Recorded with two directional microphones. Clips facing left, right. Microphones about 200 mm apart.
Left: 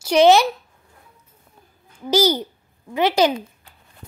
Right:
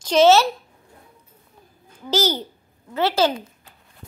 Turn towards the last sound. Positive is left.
turn(degrees=15)  # may be behind; listen again after turning